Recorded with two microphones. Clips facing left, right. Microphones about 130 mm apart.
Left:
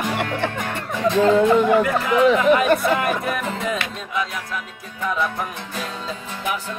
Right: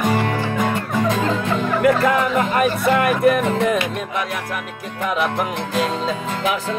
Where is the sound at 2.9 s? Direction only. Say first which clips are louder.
Right 6 dB; 55° right (ahead or behind).